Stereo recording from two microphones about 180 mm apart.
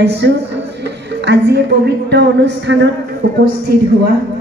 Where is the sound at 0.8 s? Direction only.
75° right (ahead or behind).